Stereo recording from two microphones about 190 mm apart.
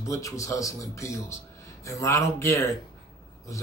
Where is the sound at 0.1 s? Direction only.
15° left (ahead or behind).